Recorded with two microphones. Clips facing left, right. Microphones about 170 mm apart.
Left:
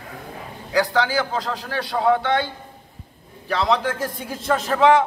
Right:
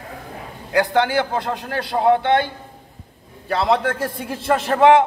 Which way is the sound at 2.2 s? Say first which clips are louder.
Right 4 dB; 55° right (ahead or behind).